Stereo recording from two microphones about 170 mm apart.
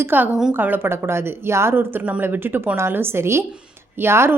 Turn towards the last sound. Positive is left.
turn(degrees=-15)  # may be behind; listen again after turning